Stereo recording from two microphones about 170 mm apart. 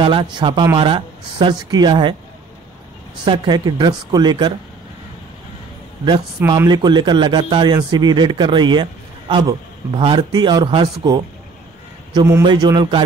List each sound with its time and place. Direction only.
0.0 s speech: 30° right (ahead or behind)
3.3 s speech: 25° right (ahead or behind)
6.4 s a man's voice: 20° right (ahead or behind)